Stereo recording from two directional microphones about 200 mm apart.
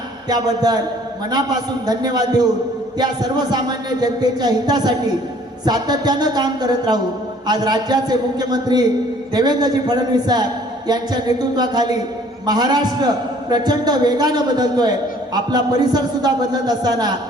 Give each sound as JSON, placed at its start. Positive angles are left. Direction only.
{"t": 0.3, "sound": "a man's voice", "side_deg": -20}